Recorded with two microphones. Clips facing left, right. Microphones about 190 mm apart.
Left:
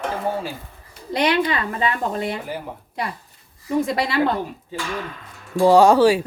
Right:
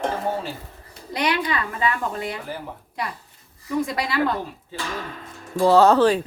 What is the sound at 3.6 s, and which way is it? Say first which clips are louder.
Speech: left 3 dB; 25° left (ahead or behind).